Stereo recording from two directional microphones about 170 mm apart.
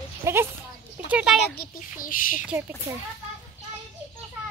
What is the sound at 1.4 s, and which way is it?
Speech, 65° left (ahead or behind).